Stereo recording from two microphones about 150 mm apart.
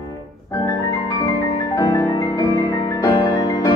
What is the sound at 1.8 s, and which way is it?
Music, 20° left (ahead or behind).